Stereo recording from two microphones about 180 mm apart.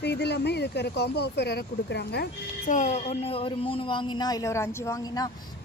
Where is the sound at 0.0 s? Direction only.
65° left (ahead or behind).